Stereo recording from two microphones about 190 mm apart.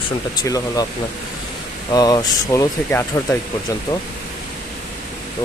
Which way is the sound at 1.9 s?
20° left (ahead or behind).